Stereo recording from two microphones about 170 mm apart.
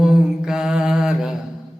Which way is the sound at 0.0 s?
5° right (ahead or behind).